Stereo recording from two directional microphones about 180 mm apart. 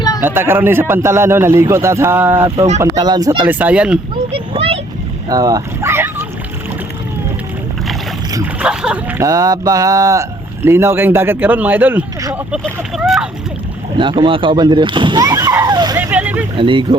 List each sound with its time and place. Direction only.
0.2 s speech: 10° right (ahead or behind)
2.6 s speech: 40° right (ahead or behind)
2.8 s speech: 20° right (ahead or behind); by 4.0 s 5° right (ahead or behind)
4.5 s vehicle: 30° right (ahead or behind)
5.3 s a sound: 20° right (ahead or behind)
8.5 s speech: 5° right (ahead or behind)
9.2 s speech: 20° right (ahead or behind)
13.0 s splash: 5° right (ahead or behind)
13.9 s speech: 25° right (ahead or behind)
16.0 s vehicle: 10° right (ahead or behind)
16.6 s speech: 30° right (ahead or behind)